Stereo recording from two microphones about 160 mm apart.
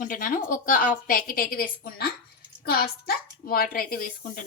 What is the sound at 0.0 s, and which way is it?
A woman's voice, 55° left (ahead or behind).